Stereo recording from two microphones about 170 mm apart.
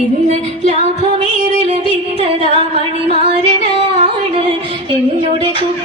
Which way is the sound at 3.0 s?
35° right (ahead or behind).